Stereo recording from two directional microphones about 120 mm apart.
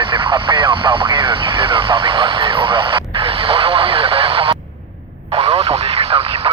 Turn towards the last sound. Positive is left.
turn(degrees=-45)  # may be behind; listen again after turning